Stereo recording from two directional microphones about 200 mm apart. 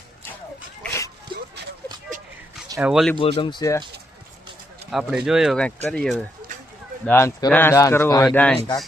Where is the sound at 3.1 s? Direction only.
25° left (ahead or behind).